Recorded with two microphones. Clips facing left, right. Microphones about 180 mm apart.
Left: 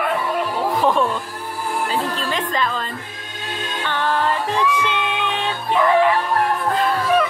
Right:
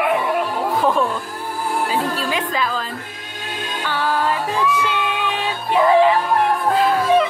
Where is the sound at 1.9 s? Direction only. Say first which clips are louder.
Right 2 dB; 10° right (ahead or behind).